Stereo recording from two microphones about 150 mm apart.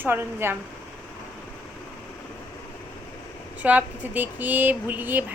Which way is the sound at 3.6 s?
10° right (ahead or behind).